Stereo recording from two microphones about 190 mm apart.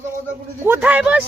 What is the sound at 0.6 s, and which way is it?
Speech, 10° right (ahead or behind).